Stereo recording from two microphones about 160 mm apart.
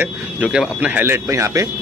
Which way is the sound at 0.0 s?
5° right (ahead or behind).